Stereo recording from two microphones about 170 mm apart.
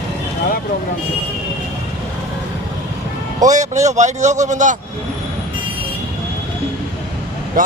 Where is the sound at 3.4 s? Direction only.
45° right (ahead or behind).